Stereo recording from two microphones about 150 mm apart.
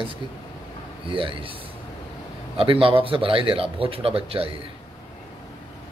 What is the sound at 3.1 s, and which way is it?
Speech, 35° right (ahead or behind).